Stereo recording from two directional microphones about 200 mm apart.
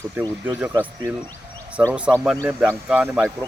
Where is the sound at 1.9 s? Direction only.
5° right (ahead or behind).